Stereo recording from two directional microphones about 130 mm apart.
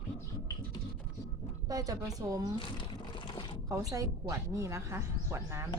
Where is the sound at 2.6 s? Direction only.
40° left (ahead or behind).